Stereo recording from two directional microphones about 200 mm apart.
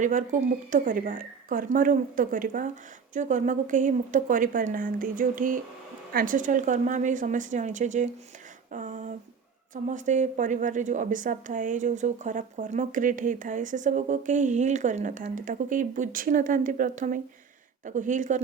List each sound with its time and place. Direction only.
0.0 s a woman's voice: 40° right (ahead or behind)
8.7 s a sound: 40° right (ahead or behind)
9.7 s a woman's voice: 40° right (ahead or behind)